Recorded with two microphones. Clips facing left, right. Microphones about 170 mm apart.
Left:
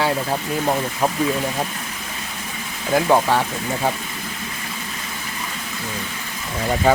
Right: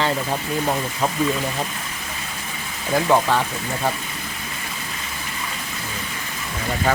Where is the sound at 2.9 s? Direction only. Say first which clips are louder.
Left 1 dB; 10° left (ahead or behind).